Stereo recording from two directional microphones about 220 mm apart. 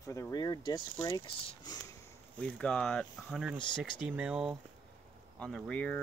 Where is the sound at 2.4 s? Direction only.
5° left (ahead or behind).